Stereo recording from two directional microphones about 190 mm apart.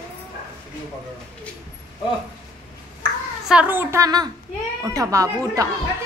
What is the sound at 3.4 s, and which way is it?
A woman's voice, 5° right (ahead or behind).